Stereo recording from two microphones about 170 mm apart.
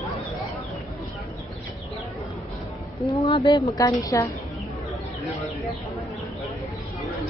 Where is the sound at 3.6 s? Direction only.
20° left (ahead or behind).